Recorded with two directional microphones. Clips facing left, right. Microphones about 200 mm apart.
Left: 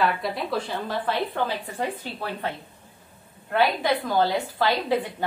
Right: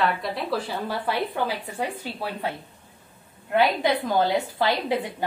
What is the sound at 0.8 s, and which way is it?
A woman's voice, 10° right (ahead or behind).